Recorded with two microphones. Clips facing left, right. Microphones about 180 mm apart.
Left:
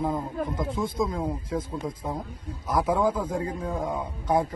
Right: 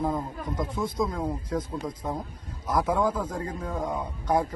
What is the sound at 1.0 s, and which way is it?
A man's voice, 10° left (ahead or behind).